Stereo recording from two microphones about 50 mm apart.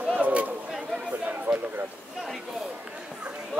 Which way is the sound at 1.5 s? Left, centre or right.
Right.